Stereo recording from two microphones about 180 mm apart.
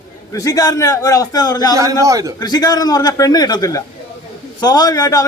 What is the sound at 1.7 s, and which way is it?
Speech, 20° right (ahead or behind).